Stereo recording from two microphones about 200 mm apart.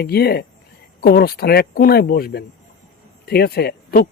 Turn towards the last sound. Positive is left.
turn(degrees=50)  # may be behind; listen again after turning